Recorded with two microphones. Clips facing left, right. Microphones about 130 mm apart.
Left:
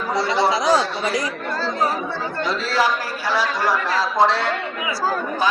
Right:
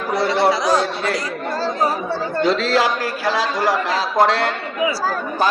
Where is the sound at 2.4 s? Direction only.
90° right.